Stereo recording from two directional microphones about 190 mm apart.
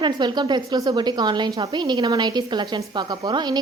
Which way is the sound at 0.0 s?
25° right (ahead or behind).